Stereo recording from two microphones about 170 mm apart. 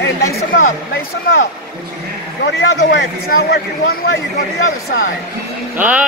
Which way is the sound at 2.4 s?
90° left.